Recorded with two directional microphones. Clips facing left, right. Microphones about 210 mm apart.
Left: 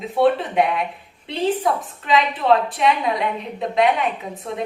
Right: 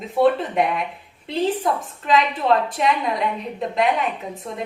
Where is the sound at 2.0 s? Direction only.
Centre (ahead or behind).